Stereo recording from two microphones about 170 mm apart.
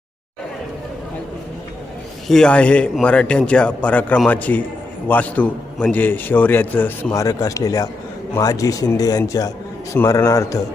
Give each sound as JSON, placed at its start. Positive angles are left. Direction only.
{"t": 2.2, "sound": "a man's voice", "side_deg": 5}